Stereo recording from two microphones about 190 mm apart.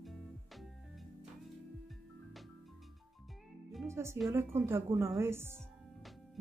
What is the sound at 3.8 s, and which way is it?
A woman's voice, 15° right (ahead or behind).